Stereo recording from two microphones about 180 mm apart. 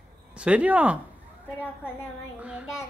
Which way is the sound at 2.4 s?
5° right (ahead or behind).